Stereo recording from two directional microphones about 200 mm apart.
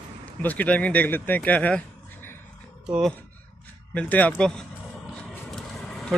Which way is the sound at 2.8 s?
5° right (ahead or behind).